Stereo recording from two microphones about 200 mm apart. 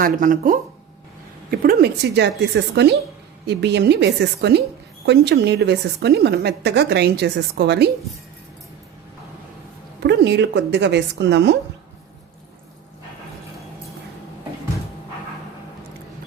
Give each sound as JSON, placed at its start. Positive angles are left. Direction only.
{"t": 0.0, "sound": "a woman's voice", "side_deg": -40}
{"t": 10.0, "sound": "a woman's voice", "side_deg": -60}